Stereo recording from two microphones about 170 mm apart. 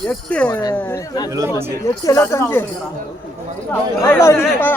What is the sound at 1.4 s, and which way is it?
Speech, 15° right (ahead or behind).